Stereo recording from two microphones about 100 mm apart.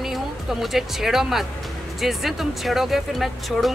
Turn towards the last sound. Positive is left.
turn(degrees=0)  # may be behind; listen again after turning